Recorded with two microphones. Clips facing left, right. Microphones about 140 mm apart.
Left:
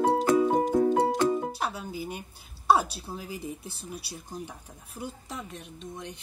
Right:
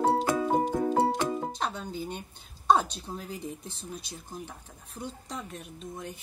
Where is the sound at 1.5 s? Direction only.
10° left (ahead or behind).